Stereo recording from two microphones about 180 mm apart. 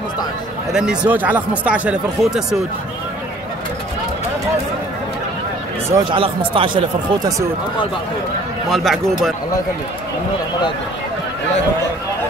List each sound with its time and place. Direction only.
0.7 s speech: 5° right (ahead or behind)
5.9 s speech: 25° right (ahead or behind)
8.6 s a man's voice: centre (ahead or behind)